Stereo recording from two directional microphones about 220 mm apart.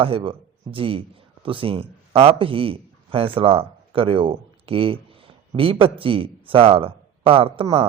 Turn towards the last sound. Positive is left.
turn(degrees=-25)  # may be behind; listen again after turning